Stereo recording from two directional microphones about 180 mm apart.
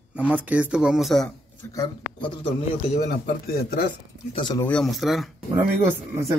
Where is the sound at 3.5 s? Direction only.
60° left (ahead or behind).